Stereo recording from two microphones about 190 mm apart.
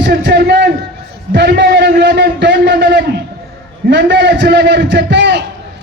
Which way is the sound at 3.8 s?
65° right (ahead or behind).